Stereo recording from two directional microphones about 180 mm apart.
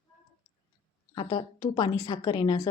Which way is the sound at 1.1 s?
25° left (ahead or behind).